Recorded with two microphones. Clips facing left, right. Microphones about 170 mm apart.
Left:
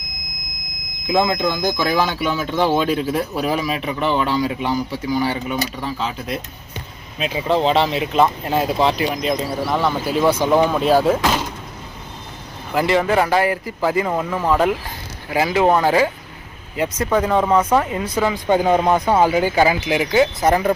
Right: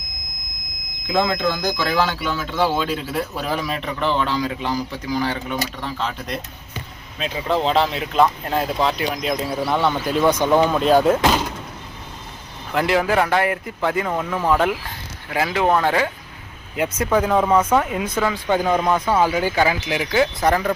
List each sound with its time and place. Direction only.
1.0 s speech: 15° left (ahead or behind)
12.7 s speech: centre (ahead or behind)
17.6 s speech: 10° left (ahead or behind)